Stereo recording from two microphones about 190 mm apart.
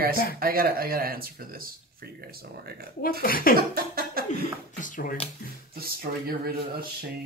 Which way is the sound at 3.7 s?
50° right (ahead or behind).